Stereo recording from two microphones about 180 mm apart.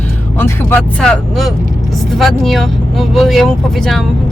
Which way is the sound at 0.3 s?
10° left (ahead or behind).